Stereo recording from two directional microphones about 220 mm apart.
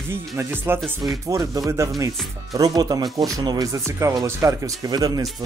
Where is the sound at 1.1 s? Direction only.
15° right (ahead or behind).